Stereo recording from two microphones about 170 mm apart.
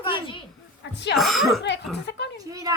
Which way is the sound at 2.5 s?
20° right (ahead or behind).